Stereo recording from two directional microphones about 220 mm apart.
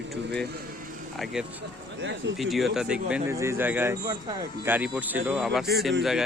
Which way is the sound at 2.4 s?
Centre (ahead or behind).